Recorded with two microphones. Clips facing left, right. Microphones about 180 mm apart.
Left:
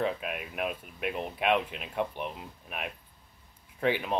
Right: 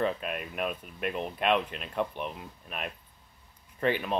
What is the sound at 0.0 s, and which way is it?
Speech, 10° left (ahead or behind).